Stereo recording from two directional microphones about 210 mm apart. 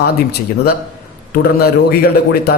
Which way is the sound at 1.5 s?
50° left (ahead or behind).